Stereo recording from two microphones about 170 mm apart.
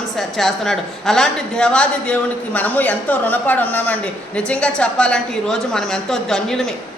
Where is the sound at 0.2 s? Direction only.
Centre (ahead or behind).